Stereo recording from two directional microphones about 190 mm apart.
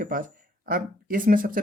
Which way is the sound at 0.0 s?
45° right (ahead or behind).